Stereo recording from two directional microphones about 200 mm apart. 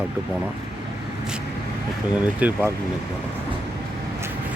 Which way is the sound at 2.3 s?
5° right (ahead or behind).